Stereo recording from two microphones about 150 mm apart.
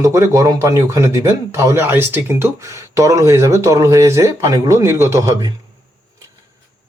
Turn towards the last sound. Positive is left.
turn(degrees=-20)  # may be behind; listen again after turning